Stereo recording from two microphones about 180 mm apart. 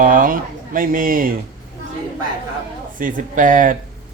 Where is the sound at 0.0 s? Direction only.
50° right (ahead or behind).